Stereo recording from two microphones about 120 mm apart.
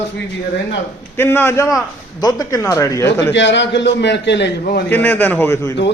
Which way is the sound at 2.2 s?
35° left (ahead or behind).